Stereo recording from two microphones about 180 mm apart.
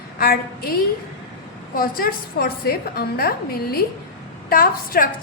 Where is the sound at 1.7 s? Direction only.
55° left (ahead or behind).